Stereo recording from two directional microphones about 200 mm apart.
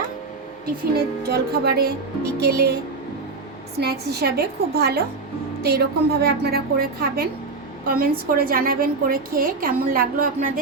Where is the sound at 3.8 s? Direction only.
55° right (ahead or behind).